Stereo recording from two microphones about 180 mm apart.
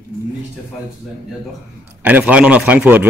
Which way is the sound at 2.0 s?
10° right (ahead or behind).